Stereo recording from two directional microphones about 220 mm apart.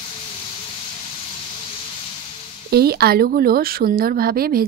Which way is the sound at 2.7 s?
45° right (ahead or behind).